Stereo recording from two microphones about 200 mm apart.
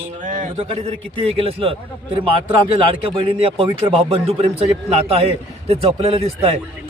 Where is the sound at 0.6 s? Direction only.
30° right (ahead or behind).